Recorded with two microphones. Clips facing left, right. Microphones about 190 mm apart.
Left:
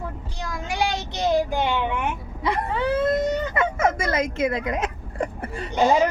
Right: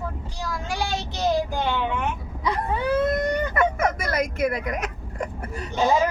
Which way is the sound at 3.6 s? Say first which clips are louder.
Left 1 dB; 25° left (ahead or behind).